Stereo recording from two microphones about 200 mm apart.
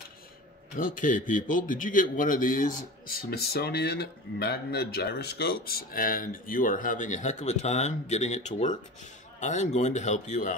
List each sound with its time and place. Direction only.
0.7 s a man's voice: 40° left (ahead or behind)